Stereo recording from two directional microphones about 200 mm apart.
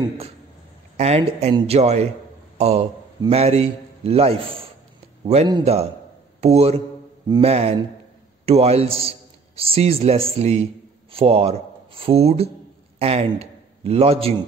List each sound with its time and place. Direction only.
0.9 s a man's voice: 35° right (ahead or behind)